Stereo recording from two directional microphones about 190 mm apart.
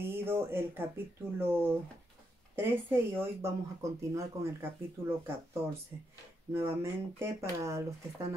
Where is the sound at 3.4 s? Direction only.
15° right (ahead or behind).